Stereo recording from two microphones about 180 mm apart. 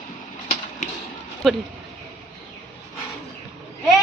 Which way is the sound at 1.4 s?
Centre (ahead or behind).